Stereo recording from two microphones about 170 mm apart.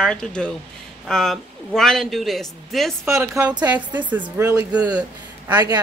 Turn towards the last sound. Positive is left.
turn(degrees=-15)  # may be behind; listen again after turning